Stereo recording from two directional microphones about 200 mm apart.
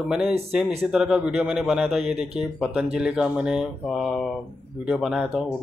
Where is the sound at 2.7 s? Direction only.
5° right (ahead or behind).